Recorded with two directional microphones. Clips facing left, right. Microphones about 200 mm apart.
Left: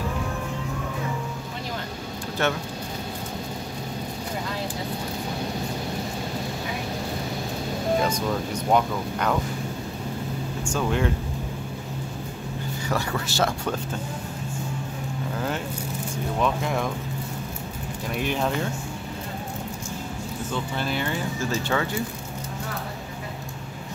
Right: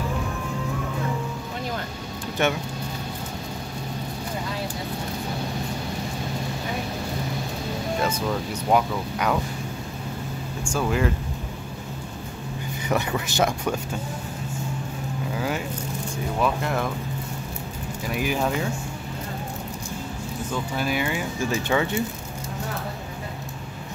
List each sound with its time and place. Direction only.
2.4 s speech: 20° right (ahead or behind)
8.0 s speech: 5° right (ahead or behind)
10.6 s speech: 10° right (ahead or behind)
12.8 s speech: 20° right (ahead or behind)
15.3 s speech: 5° right (ahead or behind)
18.0 s speech: 5° right (ahead or behind)
20.5 s speech: 10° right (ahead or behind)